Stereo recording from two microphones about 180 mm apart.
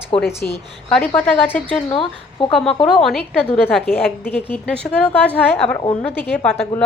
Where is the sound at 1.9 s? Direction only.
30° left (ahead or behind).